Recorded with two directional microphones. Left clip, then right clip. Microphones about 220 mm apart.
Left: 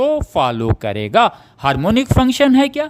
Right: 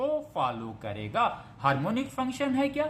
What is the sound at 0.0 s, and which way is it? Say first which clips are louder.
Speech: left 13 dB; 50° left (ahead or behind).